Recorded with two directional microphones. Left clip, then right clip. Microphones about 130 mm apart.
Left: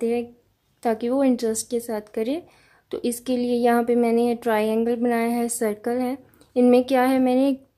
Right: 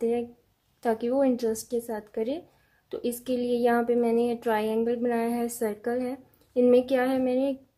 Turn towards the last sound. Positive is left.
turn(degrees=35)  # may be behind; listen again after turning